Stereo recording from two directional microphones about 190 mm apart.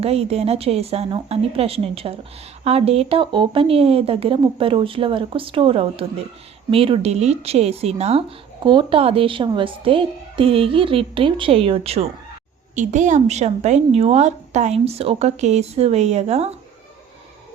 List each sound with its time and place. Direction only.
0.0 s a woman's voice: 30° right (ahead or behind)